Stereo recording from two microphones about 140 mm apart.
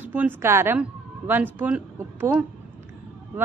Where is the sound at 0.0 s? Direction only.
15° right (ahead or behind).